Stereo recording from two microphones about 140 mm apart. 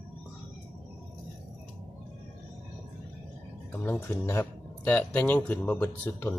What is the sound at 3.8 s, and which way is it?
Speech, 15° left (ahead or behind).